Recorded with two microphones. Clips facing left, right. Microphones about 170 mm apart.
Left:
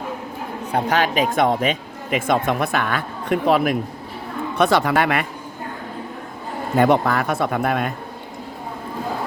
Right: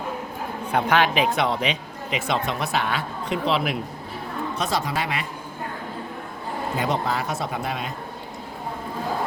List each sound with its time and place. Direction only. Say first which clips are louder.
0.7 s speech: left 1 dB; 40° left (ahead or behind)
4.5 s speech: left 10 dB; 60° left (ahead or behind)
6.7 s speech: left 9 dB; 60° left (ahead or behind)